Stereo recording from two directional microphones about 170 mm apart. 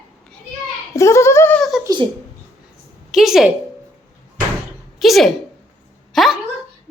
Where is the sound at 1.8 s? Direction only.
25° right (ahead or behind).